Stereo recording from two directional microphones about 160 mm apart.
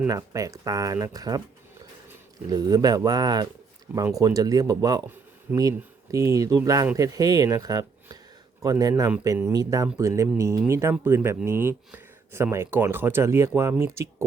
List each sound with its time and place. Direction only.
0.1 s speech: 20° right (ahead or behind)
2.5 s speech: 25° right (ahead or behind)